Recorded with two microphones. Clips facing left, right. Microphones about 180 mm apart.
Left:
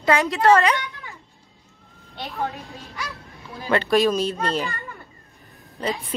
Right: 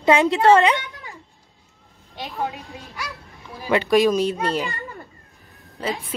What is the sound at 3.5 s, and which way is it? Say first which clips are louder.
A child's voice: right 2 dB; 10° right (ahead or behind).